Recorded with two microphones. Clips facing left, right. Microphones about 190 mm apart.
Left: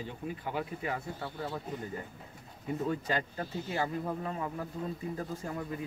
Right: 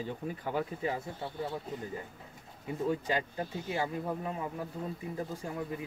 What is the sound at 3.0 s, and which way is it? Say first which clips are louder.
Speech: right 1 dB; 15° right (ahead or behind).